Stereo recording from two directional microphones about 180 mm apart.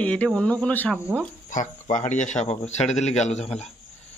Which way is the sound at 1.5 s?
45° left (ahead or behind).